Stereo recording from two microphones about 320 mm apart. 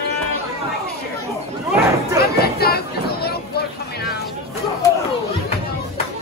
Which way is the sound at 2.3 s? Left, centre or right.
Left.